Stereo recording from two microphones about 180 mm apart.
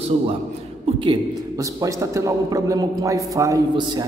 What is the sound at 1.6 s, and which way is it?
A man's voice, 15° right (ahead or behind).